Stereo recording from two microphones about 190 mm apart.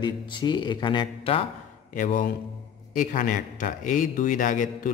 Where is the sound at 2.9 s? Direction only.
45° left (ahead or behind).